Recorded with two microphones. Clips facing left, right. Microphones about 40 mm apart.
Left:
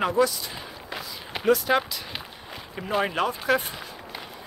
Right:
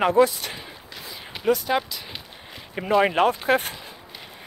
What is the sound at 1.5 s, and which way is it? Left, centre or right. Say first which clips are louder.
Speech: left 1 dB; centre.